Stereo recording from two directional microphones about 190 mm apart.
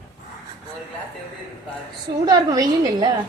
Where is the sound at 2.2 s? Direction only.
20° right (ahead or behind).